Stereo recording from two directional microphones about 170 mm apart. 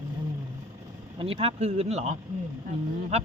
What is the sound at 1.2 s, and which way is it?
Speech, 35° right (ahead or behind).